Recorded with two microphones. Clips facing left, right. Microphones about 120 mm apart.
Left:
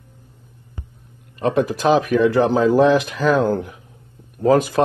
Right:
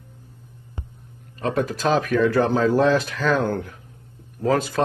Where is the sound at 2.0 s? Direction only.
10° left (ahead or behind).